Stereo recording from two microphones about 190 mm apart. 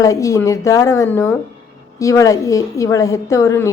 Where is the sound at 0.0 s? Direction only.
15° left (ahead or behind).